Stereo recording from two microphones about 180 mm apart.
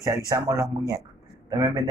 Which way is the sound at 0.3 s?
20° right (ahead or behind).